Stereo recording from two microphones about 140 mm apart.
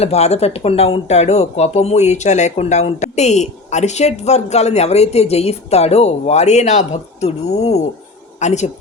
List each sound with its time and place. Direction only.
0.0 s speech: 50° left (ahead or behind)